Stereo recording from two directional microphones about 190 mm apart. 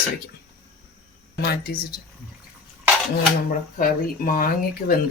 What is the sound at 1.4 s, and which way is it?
Speech, 55° left (ahead or behind).